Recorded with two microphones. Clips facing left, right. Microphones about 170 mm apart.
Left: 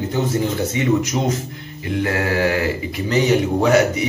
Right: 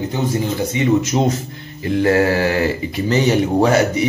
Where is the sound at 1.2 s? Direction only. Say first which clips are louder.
Right 3 dB; 30° right (ahead or behind).